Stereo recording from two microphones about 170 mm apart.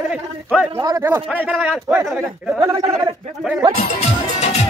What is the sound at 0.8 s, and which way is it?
Speech, 20° right (ahead or behind).